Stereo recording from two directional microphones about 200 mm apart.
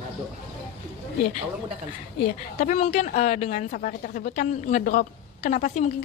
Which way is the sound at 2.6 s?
35° left (ahead or behind).